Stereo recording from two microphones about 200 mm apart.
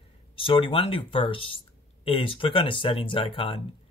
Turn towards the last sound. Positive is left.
turn(degrees=25)  # may be behind; listen again after turning